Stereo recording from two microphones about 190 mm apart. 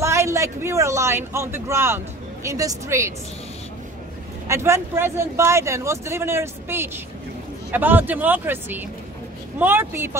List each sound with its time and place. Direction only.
0.0 s a man's voice: 15° right (ahead or behind)
4.5 s speech: 15° right (ahead or behind)